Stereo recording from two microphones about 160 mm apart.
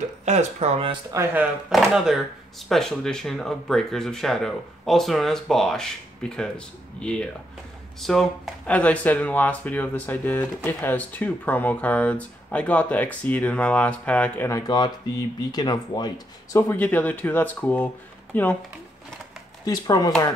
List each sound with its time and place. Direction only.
0.2 s speech: 45° right (ahead or behind)
1.1 s speech: 15° right (ahead or behind)
1.7 s speech: centre (ahead or behind)
14.5 s speech: 25° left (ahead or behind)
16.5 s speech: 15° left (ahead or behind)
19.6 s speech: 25° left (ahead or behind)